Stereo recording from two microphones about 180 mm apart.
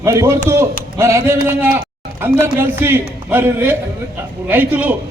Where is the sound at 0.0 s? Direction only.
15° right (ahead or behind).